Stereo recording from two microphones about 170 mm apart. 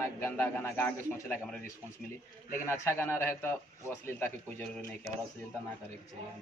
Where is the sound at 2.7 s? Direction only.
15° left (ahead or behind).